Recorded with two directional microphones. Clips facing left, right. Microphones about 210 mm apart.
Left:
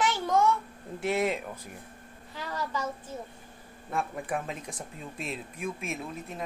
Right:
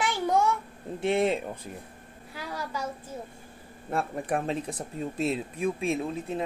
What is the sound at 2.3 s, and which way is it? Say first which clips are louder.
Speech: left 1 dB; 10° right (ahead or behind).